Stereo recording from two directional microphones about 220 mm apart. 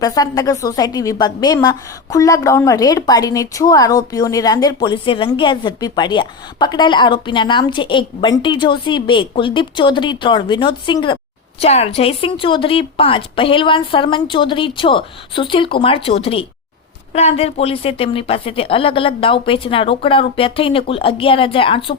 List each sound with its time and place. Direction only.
0.0 s a woman's voice: 15° left (ahead or behind)